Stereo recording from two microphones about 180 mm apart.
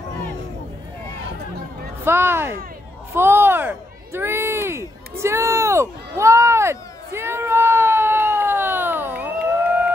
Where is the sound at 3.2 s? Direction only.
15° right (ahead or behind).